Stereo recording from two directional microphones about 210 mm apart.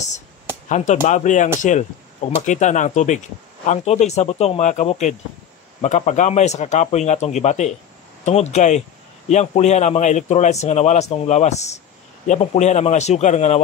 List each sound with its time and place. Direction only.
0.7 s speech: 35° left (ahead or behind)